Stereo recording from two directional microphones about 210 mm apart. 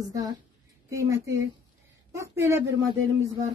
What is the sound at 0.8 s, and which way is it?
A woman's voice, 15° right (ahead or behind).